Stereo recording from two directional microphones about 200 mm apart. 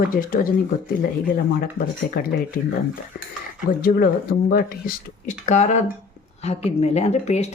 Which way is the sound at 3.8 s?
45° left (ahead or behind).